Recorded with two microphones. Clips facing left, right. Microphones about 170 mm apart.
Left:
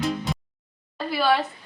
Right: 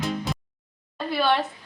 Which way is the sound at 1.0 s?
Centre (ahead or behind).